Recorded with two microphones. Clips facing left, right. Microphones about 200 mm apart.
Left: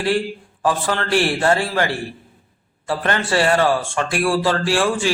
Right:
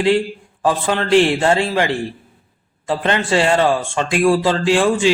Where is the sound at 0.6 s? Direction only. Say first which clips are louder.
Right 3 dB; 20° right (ahead or behind).